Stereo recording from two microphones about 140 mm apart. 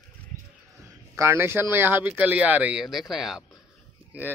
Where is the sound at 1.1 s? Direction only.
20° right (ahead or behind); by 3.4 s centre (ahead or behind).